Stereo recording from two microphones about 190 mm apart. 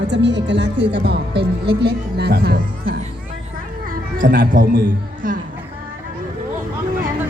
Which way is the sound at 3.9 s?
45° right (ahead or behind).